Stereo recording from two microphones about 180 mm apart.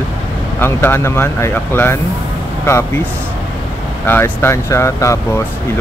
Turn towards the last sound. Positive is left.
turn(degrees=15)  # may be behind; listen again after turning